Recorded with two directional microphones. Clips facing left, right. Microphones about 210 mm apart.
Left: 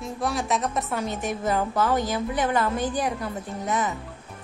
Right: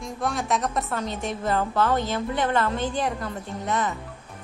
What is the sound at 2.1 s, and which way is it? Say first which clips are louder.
Speech: even; 15° left (ahead or behind).